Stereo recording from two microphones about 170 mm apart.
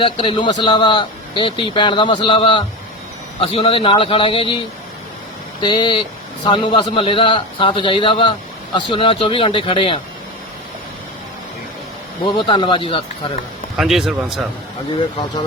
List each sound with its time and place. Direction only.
0.0 s a man's voice: 30° left (ahead or behind)
12.4 s a man's voice: 30° left (ahead or behind)
13.7 s speech: centre (ahead or behind)